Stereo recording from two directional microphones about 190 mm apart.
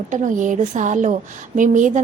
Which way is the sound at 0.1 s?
40° right (ahead or behind).